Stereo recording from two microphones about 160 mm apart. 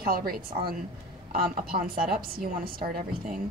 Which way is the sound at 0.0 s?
65° right (ahead or behind).